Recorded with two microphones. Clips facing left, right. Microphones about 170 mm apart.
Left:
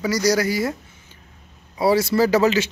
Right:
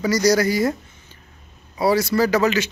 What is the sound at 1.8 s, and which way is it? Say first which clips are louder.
Speech: left 1 dB; 25° left (ahead or behind).